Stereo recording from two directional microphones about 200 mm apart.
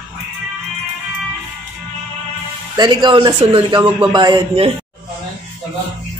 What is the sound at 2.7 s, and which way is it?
Speech, 20° right (ahead or behind).